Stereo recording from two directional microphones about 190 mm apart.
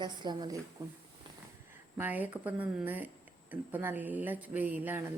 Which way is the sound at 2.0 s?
10° right (ahead or behind).